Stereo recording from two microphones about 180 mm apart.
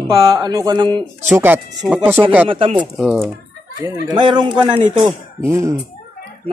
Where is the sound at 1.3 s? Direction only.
10° right (ahead or behind).